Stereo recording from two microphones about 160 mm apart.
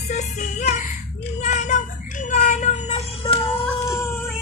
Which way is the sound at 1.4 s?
50° left (ahead or behind).